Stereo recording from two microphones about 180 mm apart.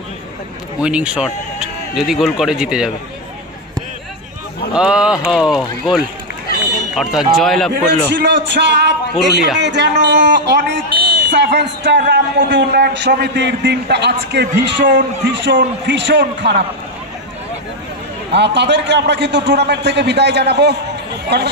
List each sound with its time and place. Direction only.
0.7 s speech: 5° right (ahead or behind)
4.7 s speech: 5° right (ahead or behind)
8.1 s a man's voice: 70° right (ahead or behind)
18.3 s a man's voice: 70° right (ahead or behind)